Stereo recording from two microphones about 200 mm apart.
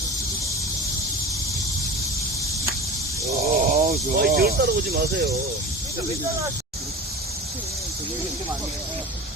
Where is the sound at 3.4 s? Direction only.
40° right (ahead or behind).